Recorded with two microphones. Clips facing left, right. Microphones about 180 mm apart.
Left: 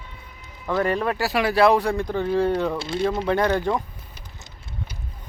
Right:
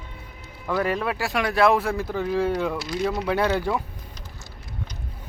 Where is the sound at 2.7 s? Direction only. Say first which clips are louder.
Left 2 dB; 25° left (ahead or behind).